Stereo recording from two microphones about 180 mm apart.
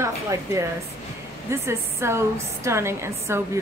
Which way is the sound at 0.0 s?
15° right (ahead or behind).